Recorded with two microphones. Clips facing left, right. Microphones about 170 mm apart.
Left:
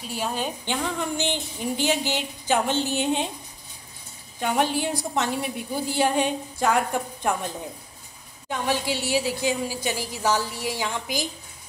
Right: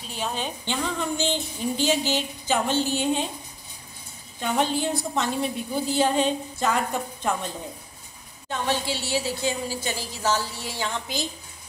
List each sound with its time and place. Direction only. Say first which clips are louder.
0.1 s a woman's voice: left 2 dB; 10° left (ahead or behind)
4.4 s a woman's voice: left 1 dB; 15° left (ahead or behind)